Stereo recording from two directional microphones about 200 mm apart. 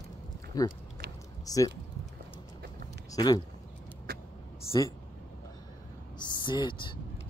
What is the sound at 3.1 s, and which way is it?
Speech, 20° left (ahead or behind).